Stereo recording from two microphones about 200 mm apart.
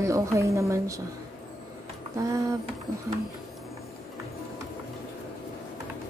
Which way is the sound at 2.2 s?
15° right (ahead or behind).